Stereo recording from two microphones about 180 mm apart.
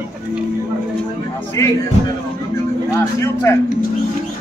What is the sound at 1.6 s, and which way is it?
Speech, 20° left (ahead or behind).